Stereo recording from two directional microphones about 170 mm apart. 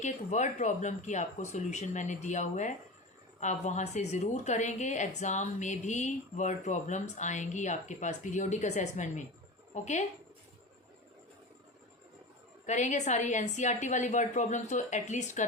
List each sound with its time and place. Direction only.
0.0 s a woman's voice: 45° left (ahead or behind)
12.6 s a woman's voice: 45° left (ahead or behind)